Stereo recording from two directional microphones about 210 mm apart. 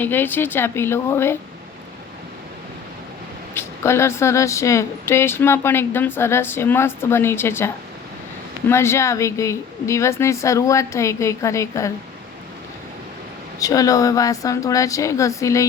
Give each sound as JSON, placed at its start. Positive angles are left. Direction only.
{"t": 0.0, "sound": "a woman's voice", "side_deg": 10}
{"t": 3.5, "sound": "a woman's voice", "side_deg": 10}
{"t": 13.6, "sound": "a woman's voice", "side_deg": 15}